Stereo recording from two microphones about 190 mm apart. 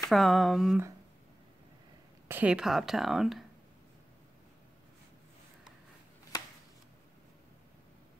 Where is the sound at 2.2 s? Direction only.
10° right (ahead or behind).